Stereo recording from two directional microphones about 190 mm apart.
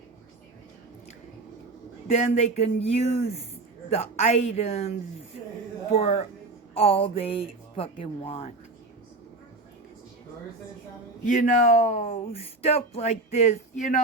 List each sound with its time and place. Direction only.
2.0 s speech: 35° left (ahead or behind)
11.3 s speech: 40° left (ahead or behind)